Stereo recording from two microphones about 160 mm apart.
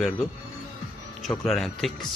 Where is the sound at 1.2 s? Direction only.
Centre (ahead or behind).